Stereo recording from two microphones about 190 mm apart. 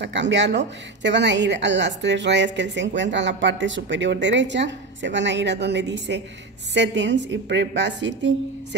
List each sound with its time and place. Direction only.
0.0 s a woman's voice: 65° right (ahead or behind)